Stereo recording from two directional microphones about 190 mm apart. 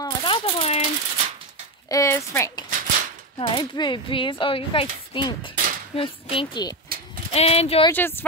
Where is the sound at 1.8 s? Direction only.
15° left (ahead or behind).